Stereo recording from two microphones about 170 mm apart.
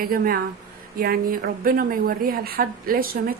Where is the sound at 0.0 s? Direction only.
60° right (ahead or behind).